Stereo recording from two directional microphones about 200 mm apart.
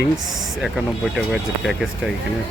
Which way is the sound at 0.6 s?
Centre (ahead or behind).